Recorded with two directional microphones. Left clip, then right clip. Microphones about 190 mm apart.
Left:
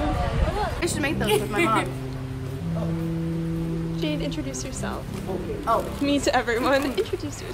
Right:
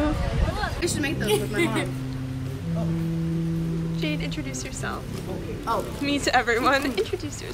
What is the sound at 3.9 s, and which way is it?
Speech, 15° left (ahead or behind).